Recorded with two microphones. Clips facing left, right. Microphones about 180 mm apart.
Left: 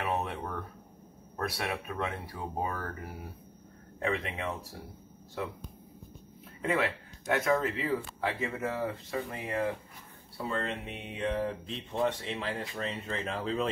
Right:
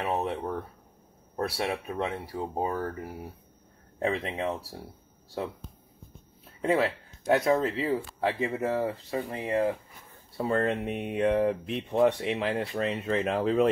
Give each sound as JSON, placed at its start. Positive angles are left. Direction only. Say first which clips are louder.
{"t": 0.0, "sound": "a sound", "louder": "right 4 dB", "side_deg": -30}
{"t": 1.3, "sound": "speech", "louder": "right 4 dB", "side_deg": -30}
{"t": 4.0, "sound": "speech", "louder": "right 4 dB", "side_deg": -30}
{"t": 6.6, "sound": "speech", "louder": "right 5 dB", "side_deg": -30}
{"t": 10.3, "sound": "speech", "louder": "right 8 dB", "side_deg": -50}